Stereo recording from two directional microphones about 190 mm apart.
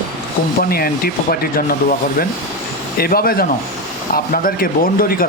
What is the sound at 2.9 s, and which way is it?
Speech, 50° left (ahead or behind).